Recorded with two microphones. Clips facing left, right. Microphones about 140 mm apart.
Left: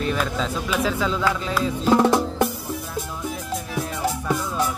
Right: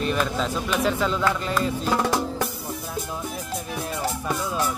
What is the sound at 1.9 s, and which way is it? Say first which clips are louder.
Music: left 8 dB; 20° left (ahead or behind).